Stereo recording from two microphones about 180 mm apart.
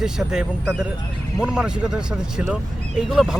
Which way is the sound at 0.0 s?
5° right (ahead or behind).